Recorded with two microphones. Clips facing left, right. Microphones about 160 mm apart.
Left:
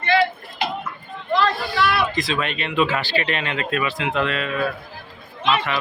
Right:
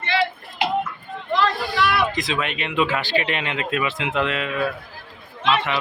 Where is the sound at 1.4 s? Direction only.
15° right (ahead or behind).